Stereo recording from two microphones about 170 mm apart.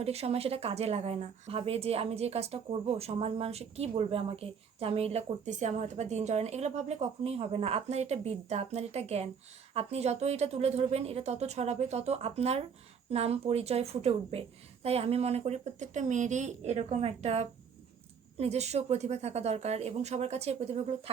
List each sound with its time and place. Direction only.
0.0 s a woman's voice: 35° right (ahead or behind)